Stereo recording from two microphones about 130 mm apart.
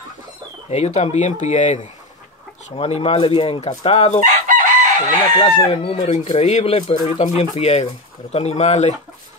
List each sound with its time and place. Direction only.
0.7 s speech: 60° left (ahead or behind)
2.7 s speech: 50° left (ahead or behind)
4.5 s chicken: 85° right
5.0 s chicken: 35° left (ahead or behind)
5.6 s speech: 50° left (ahead or behind)
6.0 s speech: 60° left (ahead or behind)